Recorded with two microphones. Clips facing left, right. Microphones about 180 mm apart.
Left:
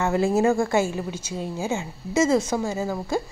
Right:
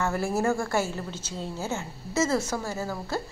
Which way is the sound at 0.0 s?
20° left (ahead or behind).